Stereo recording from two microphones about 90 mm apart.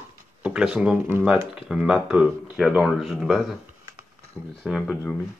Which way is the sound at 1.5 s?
5° right (ahead or behind).